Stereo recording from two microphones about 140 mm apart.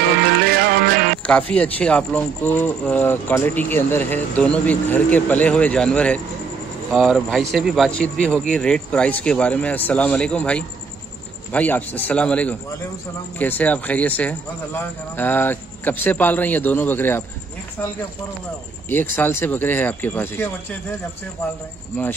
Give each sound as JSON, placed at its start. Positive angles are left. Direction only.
{"t": 0.8, "sound": "music", "side_deg": -90}
{"t": 1.2, "sound": "speech", "side_deg": 10}
{"t": 18.9, "sound": "speech", "side_deg": 15}